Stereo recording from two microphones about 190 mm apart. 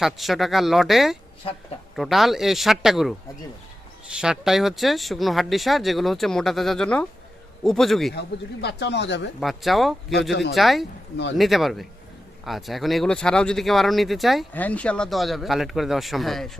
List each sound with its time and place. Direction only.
0.0 s speech: centre (ahead or behind)
8.6 s speech: 65° left (ahead or behind)
9.4 s speech: centre (ahead or behind)